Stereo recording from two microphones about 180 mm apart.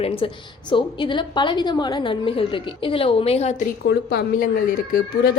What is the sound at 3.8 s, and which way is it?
Speech, 60° left (ahead or behind).